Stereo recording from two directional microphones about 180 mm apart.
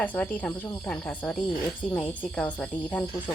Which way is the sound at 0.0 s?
10° left (ahead or behind).